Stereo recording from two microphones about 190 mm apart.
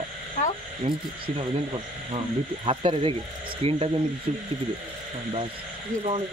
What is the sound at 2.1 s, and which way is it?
Speech, 30° right (ahead or behind).